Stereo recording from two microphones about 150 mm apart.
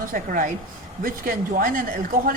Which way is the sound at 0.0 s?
65° right (ahead or behind).